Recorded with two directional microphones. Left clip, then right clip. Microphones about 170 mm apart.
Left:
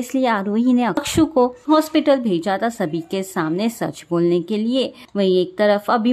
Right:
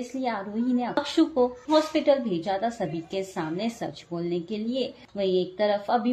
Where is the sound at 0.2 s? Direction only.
50° left (ahead or behind).